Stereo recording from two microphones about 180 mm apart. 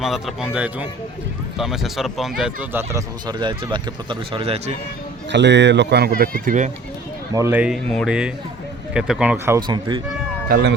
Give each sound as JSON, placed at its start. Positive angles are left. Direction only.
{"t": 0.0, "sound": "speech", "side_deg": 0}
{"t": 2.9, "sound": "speech", "side_deg": -25}
{"t": 5.3, "sound": "speech", "side_deg": -75}
{"t": 7.3, "sound": "speech", "side_deg": -10}
{"t": 9.6, "sound": "speech", "side_deg": -25}
{"t": 10.5, "sound": "speech", "side_deg": -65}